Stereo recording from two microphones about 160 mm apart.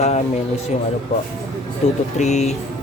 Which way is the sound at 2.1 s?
45° left (ahead or behind).